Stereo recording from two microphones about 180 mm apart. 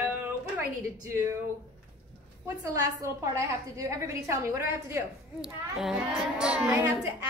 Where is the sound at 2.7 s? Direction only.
15° right (ahead or behind).